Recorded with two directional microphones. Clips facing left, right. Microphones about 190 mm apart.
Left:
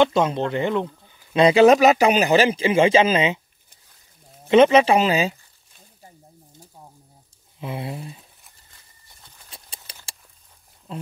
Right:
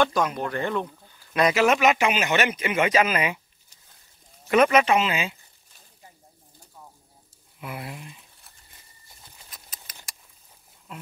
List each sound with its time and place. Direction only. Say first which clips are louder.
0.0 s speech: left 5 dB; 25° left (ahead or behind)
4.5 s speech: left 5 dB; 25° left (ahead or behind)
7.6 s speech: left 6 dB; 25° left (ahead or behind)
9.5 s patter: left 7 dB; 30° left (ahead or behind)
10.9 s speech: left 8 dB; 30° left (ahead or behind)